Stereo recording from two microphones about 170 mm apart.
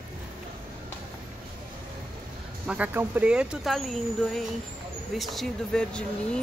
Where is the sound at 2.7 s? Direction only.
10° right (ahead or behind).